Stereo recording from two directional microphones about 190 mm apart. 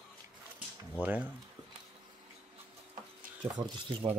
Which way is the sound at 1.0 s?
5° right (ahead or behind).